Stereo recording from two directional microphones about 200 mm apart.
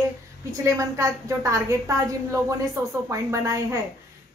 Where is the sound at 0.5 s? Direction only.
15° right (ahead or behind).